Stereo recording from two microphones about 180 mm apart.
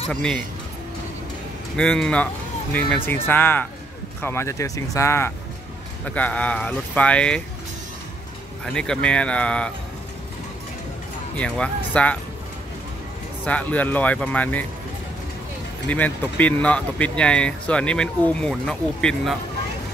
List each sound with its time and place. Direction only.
0.1 s speech: 5° left (ahead or behind)
1.8 s speech: 5° left (ahead or behind)
8.7 s speech: 5° left (ahead or behind)
11.3 s speech: 5° left (ahead or behind)
13.5 s speech: 10° left (ahead or behind)
15.9 s speech: 10° left (ahead or behind)